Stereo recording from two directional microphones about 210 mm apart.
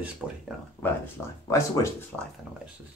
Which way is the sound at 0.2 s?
5° right (ahead or behind).